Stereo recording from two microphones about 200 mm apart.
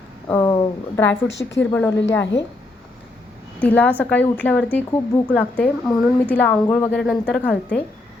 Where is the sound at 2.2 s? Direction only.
60° left (ahead or behind).